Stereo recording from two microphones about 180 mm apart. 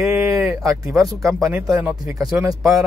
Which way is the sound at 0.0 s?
15° right (ahead or behind).